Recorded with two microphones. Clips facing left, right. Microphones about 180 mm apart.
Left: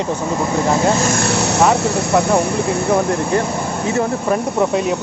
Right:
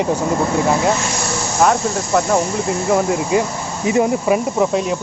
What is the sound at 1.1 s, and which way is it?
Vehicle, 70° left (ahead or behind).